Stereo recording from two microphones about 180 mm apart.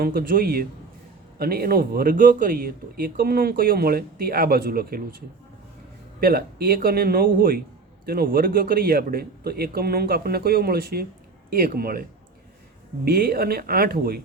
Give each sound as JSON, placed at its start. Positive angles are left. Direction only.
{"t": 0.0, "sound": "speech", "side_deg": -60}
{"t": 6.1, "sound": "speech", "side_deg": -55}
{"t": 13.1, "sound": "speech", "side_deg": -55}